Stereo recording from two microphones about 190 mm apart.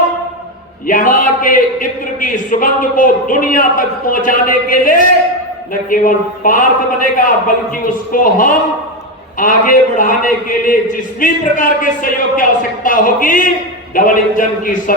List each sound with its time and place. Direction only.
0.9 s a man's voice: 45° left (ahead or behind)